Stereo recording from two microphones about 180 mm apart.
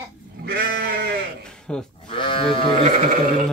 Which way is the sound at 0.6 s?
65° right (ahead or behind).